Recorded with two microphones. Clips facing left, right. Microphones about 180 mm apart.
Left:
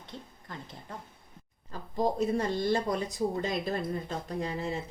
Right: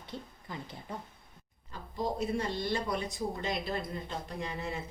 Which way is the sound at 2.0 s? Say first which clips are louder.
Left 5 dB; 40° left (ahead or behind).